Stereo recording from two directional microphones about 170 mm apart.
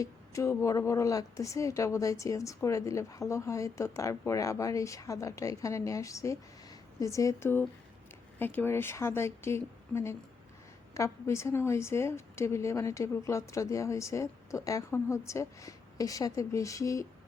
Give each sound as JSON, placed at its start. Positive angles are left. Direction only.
{"t": 0.0, "sound": "a woman's voice", "side_deg": 20}